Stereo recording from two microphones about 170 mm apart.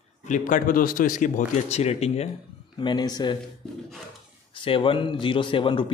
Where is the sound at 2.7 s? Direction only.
25° left (ahead or behind).